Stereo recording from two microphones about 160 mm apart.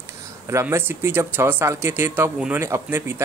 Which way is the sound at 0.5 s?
15° right (ahead or behind).